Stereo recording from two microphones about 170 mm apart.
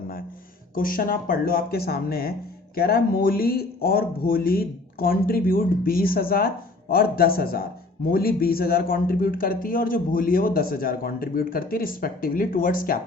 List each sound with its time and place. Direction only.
0.8 s a man's voice: 55° left (ahead or behind)